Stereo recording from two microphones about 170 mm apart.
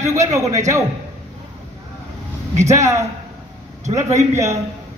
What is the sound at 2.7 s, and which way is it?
A man's voice, 15° right (ahead or behind).